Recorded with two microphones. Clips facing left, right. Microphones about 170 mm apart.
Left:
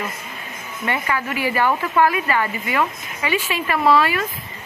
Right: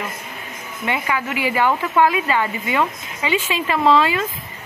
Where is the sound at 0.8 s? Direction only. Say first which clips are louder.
Right 1 dB; 15° right (ahead or behind).